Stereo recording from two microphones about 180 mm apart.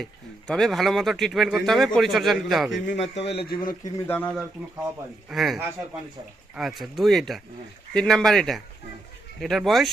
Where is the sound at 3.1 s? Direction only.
70° left (ahead or behind).